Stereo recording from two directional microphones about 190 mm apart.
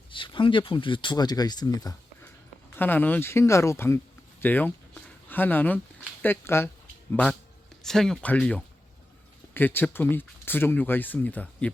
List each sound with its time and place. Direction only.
0.1 s speech: 25° left (ahead or behind); by 11.7 s 10° left (ahead or behind)